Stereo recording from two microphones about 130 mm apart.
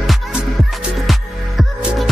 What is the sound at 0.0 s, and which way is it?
Music, centre (ahead or behind).